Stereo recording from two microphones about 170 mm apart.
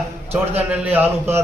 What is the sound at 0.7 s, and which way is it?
Speech, 10° right (ahead or behind).